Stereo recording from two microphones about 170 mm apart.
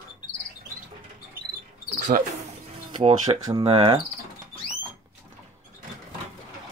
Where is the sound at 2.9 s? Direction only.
35° right (ahead or behind).